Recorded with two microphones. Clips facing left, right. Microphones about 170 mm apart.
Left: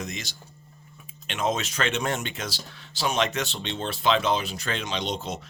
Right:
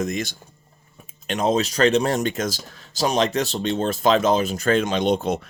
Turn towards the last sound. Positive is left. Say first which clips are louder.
# right 10 dB
turn(degrees=-55)  # may be behind; listen again after turning